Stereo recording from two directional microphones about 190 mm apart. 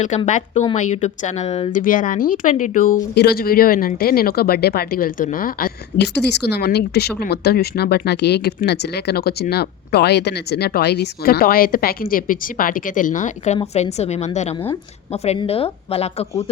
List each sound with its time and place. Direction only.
0.3 s a woman's voice: 40° left (ahead or behind)